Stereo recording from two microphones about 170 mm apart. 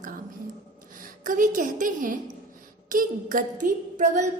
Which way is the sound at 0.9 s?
50° right (ahead or behind).